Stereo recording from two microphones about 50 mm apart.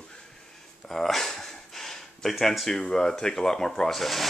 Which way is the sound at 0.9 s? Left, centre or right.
Centre.